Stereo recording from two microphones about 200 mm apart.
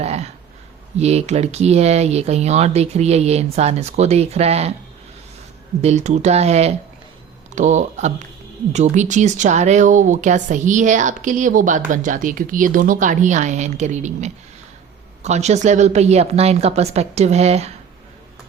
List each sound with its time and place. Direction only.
0.0 s a sound: 30° right (ahead or behind)
0.9 s speech: 35° right (ahead or behind)
5.8 s speech: 35° right (ahead or behind)